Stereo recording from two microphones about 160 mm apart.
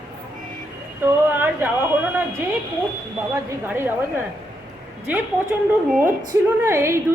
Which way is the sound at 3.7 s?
15° right (ahead or behind).